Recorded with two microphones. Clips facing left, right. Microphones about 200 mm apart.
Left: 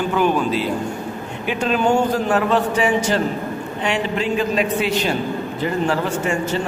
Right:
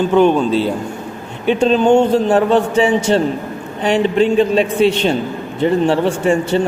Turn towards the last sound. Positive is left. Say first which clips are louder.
# right 6 dB
turn(degrees=-30)  # may be behind; listen again after turning